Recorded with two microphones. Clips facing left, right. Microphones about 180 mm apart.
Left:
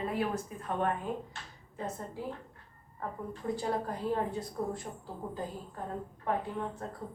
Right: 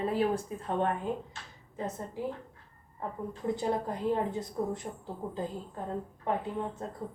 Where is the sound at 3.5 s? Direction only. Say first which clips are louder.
Right 2 dB; 20° right (ahead or behind).